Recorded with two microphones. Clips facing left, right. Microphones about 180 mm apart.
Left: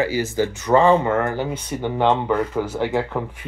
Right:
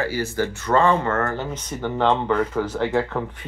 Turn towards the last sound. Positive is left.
turn(degrees=10)  # may be behind; listen again after turning